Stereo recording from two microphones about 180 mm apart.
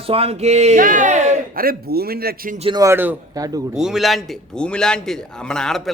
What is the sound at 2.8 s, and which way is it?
Speech, 15° right (ahead or behind).